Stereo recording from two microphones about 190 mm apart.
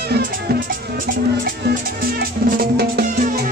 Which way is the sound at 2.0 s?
50° right (ahead or behind).